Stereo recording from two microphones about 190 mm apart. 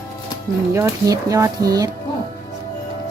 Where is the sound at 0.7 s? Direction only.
15° right (ahead or behind).